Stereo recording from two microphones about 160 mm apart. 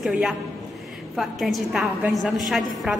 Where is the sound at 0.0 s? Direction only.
5° right (ahead or behind).